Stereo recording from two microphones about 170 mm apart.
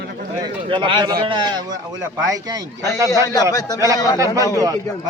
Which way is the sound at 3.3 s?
20° left (ahead or behind).